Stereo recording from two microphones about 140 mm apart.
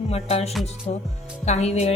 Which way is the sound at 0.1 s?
50° left (ahead or behind).